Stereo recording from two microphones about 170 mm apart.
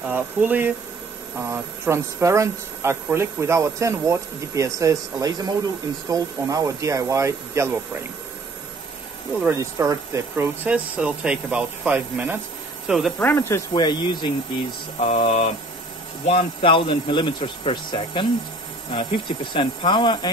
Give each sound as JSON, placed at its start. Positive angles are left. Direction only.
{"t": 0.1, "sound": "speech", "side_deg": -10}
{"t": 9.4, "sound": "speech", "side_deg": -15}
{"t": 13.2, "sound": "speech", "side_deg": 15}
{"t": 13.8, "sound": "speech", "side_deg": 25}
{"t": 15.0, "sound": "mantra", "side_deg": 40}
{"t": 16.6, "sound": "speech", "side_deg": 30}